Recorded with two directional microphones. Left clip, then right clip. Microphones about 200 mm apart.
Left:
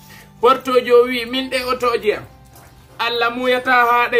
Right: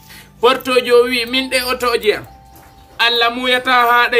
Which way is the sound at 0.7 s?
10° right (ahead or behind).